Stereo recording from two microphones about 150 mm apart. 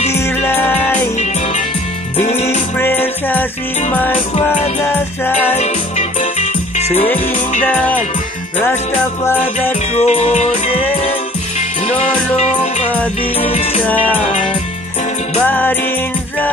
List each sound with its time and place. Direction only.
0.1 s music: 15° left (ahead or behind)
1.1 s music: 50° left (ahead or behind)
2.8 s music: 15° left (ahead or behind)
5.6 s music: 50° left (ahead or behind)
7.6 s music: 10° left (ahead or behind)
9.9 s music: 45° left (ahead or behind)
12.4 s music: 50° left (ahead or behind)
12.9 s music: 10° left (ahead or behind)
13.4 s music: 40° left (ahead or behind)
13.8 s music: 10° left (ahead or behind)
15.4 s music: 10° left (ahead or behind)